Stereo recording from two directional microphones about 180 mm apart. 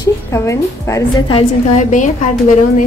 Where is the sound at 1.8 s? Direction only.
45° left (ahead or behind).